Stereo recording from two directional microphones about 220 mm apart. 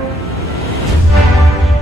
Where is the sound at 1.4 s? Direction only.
Centre (ahead or behind).